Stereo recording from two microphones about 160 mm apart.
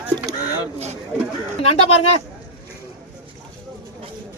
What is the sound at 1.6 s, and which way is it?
Speech, 40° left (ahead or behind).